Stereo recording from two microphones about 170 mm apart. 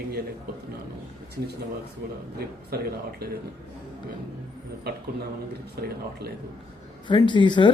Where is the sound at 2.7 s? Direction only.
65° right (ahead or behind).